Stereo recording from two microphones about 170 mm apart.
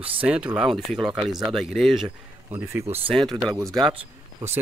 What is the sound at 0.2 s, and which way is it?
Speech, 10° right (ahead or behind).